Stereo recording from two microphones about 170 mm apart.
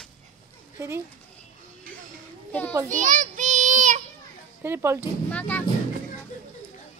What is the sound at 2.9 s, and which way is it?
Child singing, 50° right (ahead or behind).